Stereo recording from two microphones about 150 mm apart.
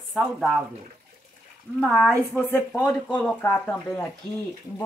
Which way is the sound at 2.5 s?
15° left (ahead or behind).